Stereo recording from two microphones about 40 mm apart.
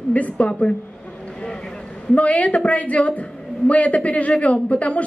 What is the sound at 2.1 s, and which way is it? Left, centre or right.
A woman's voice, left.